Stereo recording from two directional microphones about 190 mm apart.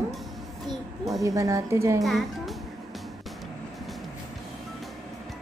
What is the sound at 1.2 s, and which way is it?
Speech, 15° right (ahead or behind).